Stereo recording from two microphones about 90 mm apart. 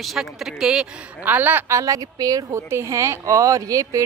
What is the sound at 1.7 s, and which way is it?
Speech, 35° right (ahead or behind).